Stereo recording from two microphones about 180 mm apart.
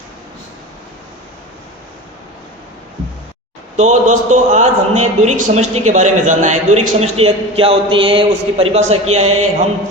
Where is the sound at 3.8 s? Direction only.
40° right (ahead or behind).